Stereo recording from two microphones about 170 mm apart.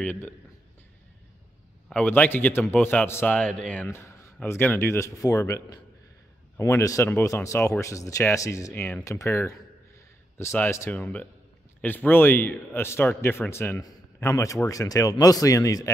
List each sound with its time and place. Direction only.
0.0 s speech: 10° left (ahead or behind)
1.9 s speech: 10° left (ahead or behind)